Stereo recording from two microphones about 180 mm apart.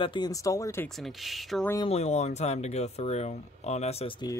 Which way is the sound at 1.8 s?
35° left (ahead or behind).